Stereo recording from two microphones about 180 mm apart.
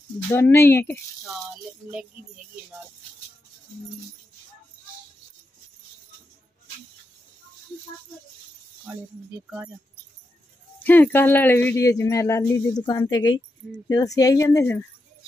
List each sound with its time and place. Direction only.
0.3 s speech: 15° left (ahead or behind)
1.9 s music: 5° right (ahead or behind)
10.8 s speech: 10° left (ahead or behind)